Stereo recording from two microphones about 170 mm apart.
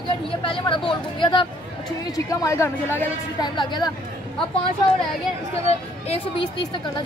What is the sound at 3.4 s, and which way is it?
Speech, 25° left (ahead or behind).